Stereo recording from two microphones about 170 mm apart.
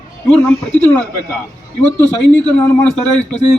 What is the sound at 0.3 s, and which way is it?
A man's voice, 10° left (ahead or behind).